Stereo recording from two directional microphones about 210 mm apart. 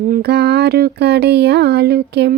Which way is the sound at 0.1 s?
50° right (ahead or behind).